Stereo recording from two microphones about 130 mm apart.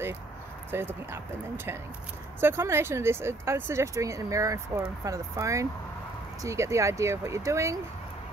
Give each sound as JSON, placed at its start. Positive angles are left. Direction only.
{"t": 0.7, "sound": "speech", "side_deg": -20}
{"t": 2.4, "sound": "speech", "side_deg": -20}